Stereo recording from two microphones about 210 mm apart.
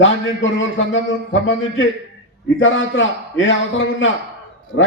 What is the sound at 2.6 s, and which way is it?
Speech, 65° left (ahead or behind).